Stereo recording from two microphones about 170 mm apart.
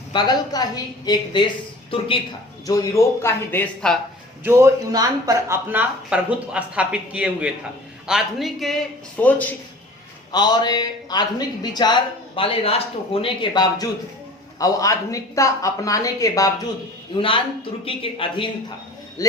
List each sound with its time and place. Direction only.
0.1 s speech: 25° left (ahead or behind)
2.6 s a man's voice: 20° left (ahead or behind)
4.4 s a man's voice: 15° right (ahead or behind); by 9.6 s 10° left (ahead or behind)
10.3 s speech: 25° left (ahead or behind)
17.2 s speech: 30° left (ahead or behind)